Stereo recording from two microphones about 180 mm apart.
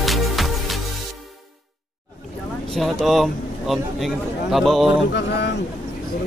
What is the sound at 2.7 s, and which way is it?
A man's voice, centre (ahead or behind).